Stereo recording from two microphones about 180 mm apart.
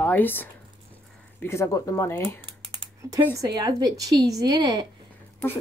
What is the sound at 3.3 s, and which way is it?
A woman's voice, 20° right (ahead or behind).